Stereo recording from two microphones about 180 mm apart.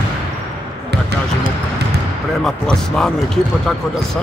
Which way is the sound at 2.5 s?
Centre (ahead or behind).